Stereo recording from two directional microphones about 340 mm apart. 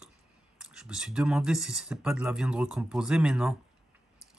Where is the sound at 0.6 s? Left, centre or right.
Centre.